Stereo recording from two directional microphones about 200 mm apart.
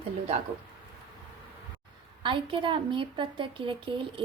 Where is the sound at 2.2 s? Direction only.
25° right (ahead or behind).